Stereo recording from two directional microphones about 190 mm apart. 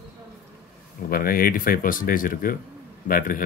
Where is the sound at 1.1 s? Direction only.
50° left (ahead or behind).